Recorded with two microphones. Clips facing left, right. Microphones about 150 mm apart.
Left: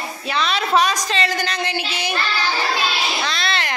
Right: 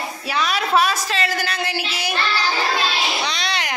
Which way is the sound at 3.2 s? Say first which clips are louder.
Left 1 dB; 15° right (ahead or behind).